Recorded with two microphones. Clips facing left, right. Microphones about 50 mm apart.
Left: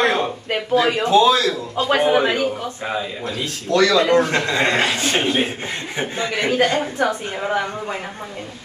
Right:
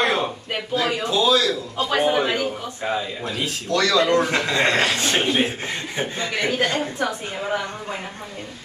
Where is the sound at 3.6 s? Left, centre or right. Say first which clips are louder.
Left 4 dB; left.